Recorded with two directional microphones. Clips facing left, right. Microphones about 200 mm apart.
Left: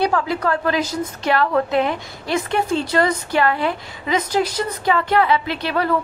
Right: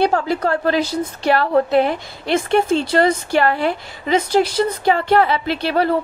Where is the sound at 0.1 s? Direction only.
35° right (ahead or behind).